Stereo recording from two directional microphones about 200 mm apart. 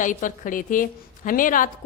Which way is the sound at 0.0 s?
40° left (ahead or behind).